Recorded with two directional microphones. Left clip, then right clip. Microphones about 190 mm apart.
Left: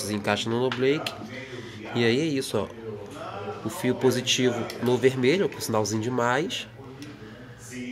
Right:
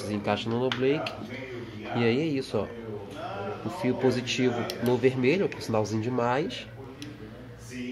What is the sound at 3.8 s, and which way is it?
Speech, 5° left (ahead or behind).